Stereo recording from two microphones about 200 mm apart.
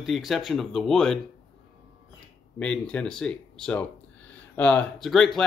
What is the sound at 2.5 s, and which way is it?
Speech, 5° left (ahead or behind).